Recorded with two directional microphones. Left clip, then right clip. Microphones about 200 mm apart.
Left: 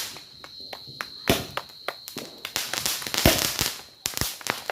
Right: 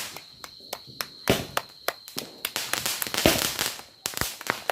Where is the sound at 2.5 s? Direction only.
Centre (ahead or behind).